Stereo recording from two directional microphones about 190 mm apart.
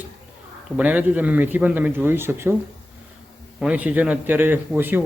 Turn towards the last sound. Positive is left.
turn(degrees=-10)  # may be behind; listen again after turning